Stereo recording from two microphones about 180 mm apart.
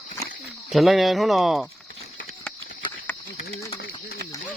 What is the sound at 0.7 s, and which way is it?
Speech, centre (ahead or behind).